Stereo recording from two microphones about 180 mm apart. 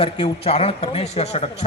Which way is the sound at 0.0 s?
30° left (ahead or behind).